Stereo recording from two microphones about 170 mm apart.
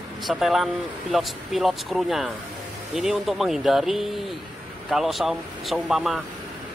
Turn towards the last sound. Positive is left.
turn(degrees=0)  # may be behind; listen again after turning